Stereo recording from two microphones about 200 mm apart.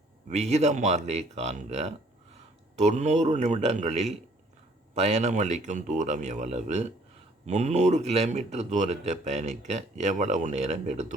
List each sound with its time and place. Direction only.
0.3 s speech: 35° right (ahead or behind)